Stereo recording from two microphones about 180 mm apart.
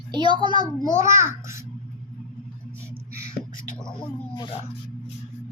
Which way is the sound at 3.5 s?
45° left (ahead or behind).